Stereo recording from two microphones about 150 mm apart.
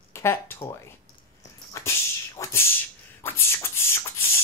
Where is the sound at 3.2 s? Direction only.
15° left (ahead or behind).